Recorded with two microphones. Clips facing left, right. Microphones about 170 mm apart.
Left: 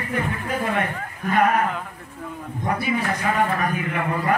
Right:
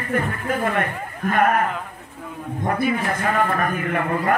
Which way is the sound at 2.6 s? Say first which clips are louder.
Right 2 dB; 50° right (ahead or behind).